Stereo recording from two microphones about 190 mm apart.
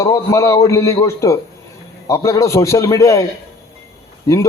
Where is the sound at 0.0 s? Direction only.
15° left (ahead or behind).